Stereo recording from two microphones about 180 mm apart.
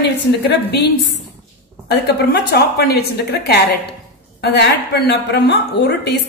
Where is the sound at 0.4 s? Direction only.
70° left (ahead or behind).